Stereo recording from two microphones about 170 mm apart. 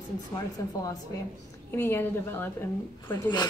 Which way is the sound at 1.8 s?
15° left (ahead or behind).